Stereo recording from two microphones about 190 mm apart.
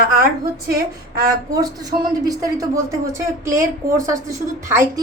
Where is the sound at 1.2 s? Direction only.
20° right (ahead or behind).